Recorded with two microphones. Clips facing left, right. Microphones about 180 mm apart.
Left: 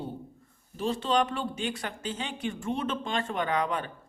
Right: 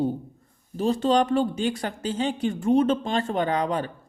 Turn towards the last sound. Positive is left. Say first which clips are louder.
# right 5 dB
turn(degrees=-35)  # may be behind; listen again after turning